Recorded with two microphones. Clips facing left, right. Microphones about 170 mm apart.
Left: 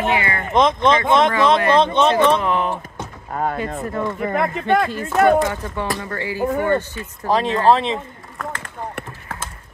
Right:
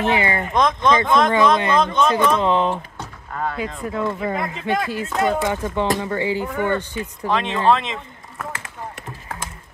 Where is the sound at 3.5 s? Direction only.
50° left (ahead or behind).